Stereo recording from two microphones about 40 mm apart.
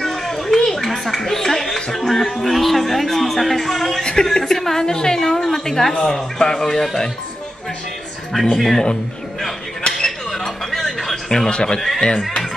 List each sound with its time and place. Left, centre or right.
0.0 s speech: centre
4.0 s a woman's voice: centre
8.5 s speech: centre
9.8 s a sound: centre
11.5 s speech: left